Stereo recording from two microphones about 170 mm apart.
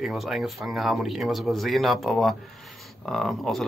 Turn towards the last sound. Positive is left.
turn(degrees=0)  # may be behind; listen again after turning